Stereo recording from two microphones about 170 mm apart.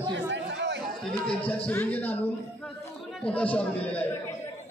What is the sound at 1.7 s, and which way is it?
Speech, 10° left (ahead or behind).